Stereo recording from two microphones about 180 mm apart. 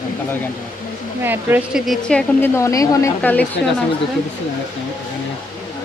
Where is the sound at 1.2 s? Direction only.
10° right (ahead or behind).